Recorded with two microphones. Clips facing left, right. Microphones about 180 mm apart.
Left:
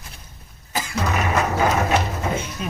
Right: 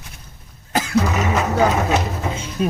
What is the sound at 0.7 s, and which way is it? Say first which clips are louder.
Cough: right 6 dB; 75° right (ahead or behind).